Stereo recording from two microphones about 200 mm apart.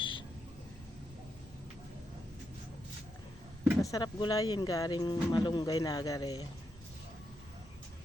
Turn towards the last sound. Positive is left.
turn(degrees=20)  # may be behind; listen again after turning